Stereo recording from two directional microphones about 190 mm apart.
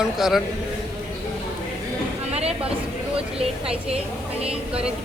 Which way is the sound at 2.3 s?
35° right (ahead or behind).